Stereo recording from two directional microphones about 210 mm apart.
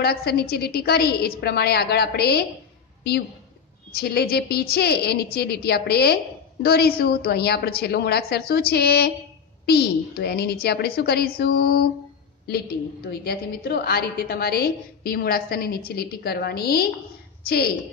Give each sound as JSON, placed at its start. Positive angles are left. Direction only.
{"t": 0.0, "sound": "a woman's voice", "side_deg": 50}